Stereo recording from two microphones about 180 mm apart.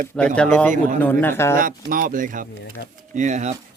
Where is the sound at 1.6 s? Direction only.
50° right (ahead or behind).